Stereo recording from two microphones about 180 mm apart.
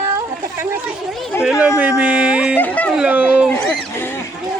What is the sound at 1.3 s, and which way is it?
Speech, 15° left (ahead or behind).